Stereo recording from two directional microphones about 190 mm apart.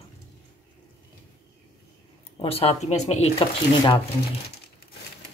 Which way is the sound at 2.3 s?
30° left (ahead or behind).